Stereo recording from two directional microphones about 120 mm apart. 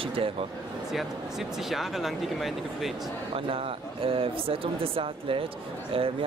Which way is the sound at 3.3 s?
50° right (ahead or behind).